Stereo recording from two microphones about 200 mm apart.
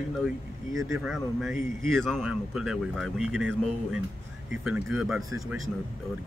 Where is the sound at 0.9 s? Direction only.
Centre (ahead or behind).